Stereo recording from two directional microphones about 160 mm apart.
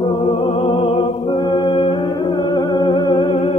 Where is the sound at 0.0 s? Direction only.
30° left (ahead or behind).